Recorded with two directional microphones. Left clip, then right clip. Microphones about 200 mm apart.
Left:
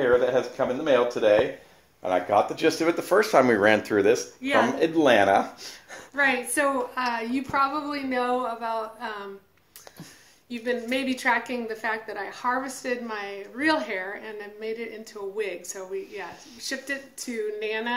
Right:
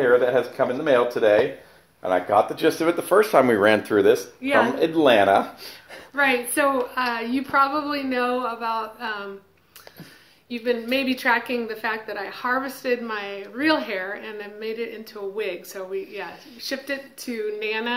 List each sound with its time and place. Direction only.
0.0 s speech: centre (ahead or behind)
2.0 s a woman's voice: 25° left (ahead or behind)
10.5 s a woman's voice: 15° left (ahead or behind)